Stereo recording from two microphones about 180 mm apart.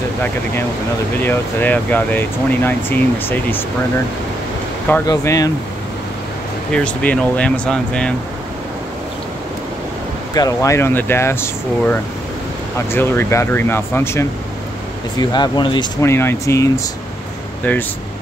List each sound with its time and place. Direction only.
1.2 s speech: 10° left (ahead or behind)
5.0 s speech: 20° left (ahead or behind)
6.7 s speech: 5° left (ahead or behind)
10.3 s speech: 20° left (ahead or behind)
12.7 s speech: 10° left (ahead or behind)
16.0 s speech: 15° left (ahead or behind)